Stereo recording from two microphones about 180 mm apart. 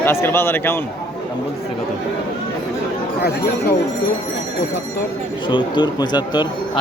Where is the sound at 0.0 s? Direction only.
15° left (ahead or behind).